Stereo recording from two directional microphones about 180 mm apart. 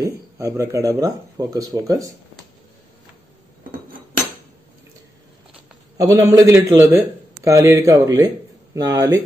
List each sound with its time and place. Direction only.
0.0 s speech: 20° right (ahead or behind)
5.9 s speech: 20° right (ahead or behind)